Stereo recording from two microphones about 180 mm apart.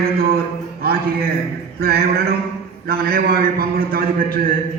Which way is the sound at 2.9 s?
55° right (ahead or behind).